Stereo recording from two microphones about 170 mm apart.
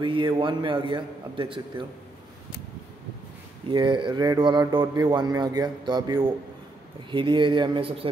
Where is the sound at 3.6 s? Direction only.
30° right (ahead or behind).